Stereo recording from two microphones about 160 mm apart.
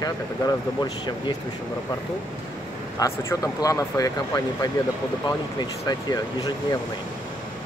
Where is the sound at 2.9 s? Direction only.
20° left (ahead or behind).